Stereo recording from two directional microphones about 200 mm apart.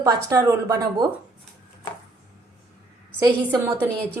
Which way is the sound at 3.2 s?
15° right (ahead or behind).